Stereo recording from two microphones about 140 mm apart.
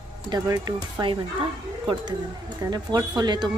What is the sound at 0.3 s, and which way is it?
Speech, 25° right (ahead or behind).